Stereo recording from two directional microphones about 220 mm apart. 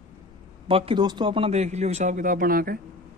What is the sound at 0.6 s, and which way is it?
A man's voice, 25° right (ahead or behind).